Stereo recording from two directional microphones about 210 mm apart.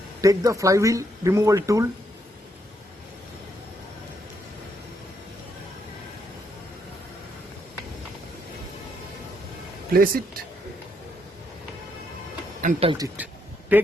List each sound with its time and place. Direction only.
0.2 s speech: 15° right (ahead or behind)
9.9 s speech: 45° right (ahead or behind)
12.6 s speech: 25° right (ahead or behind)
13.7 s speech: 10° right (ahead or behind)